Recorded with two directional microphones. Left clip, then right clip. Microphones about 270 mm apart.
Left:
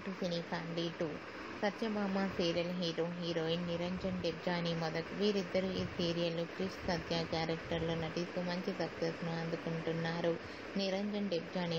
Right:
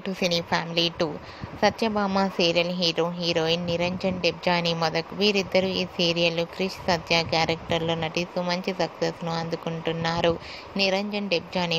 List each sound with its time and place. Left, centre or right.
0.2 s a woman's voice: right